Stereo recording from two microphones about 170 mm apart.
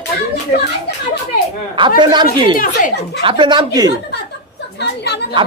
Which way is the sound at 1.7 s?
30° right (ahead or behind).